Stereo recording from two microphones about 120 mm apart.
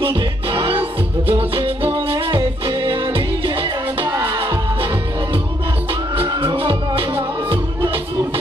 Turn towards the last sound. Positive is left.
turn(degrees=-45)  # may be behind; listen again after turning